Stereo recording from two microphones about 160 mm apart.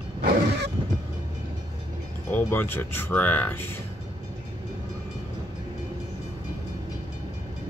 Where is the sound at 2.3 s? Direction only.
15° left (ahead or behind).